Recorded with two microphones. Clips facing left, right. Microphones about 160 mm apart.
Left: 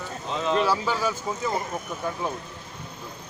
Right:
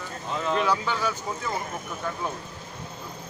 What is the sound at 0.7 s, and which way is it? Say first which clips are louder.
Speech: left 1 dB; 10° left (ahead or behind).